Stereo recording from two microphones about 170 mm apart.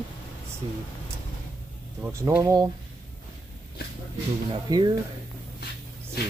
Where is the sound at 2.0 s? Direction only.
15° right (ahead or behind).